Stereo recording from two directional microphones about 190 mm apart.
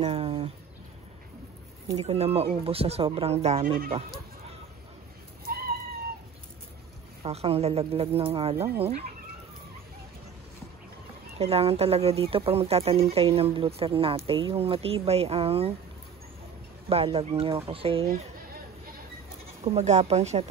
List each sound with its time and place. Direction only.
0.0 s a sound: 30° right (ahead or behind)
2.0 s speech: 35° right (ahead or behind)
7.2 s speech: 30° right (ahead or behind)
11.3 s speech: 30° right (ahead or behind)
16.9 s speech: 30° right (ahead or behind)
19.6 s speech: 35° right (ahead or behind)